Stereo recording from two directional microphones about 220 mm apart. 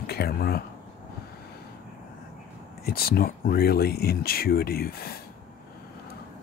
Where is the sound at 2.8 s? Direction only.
45° left (ahead or behind).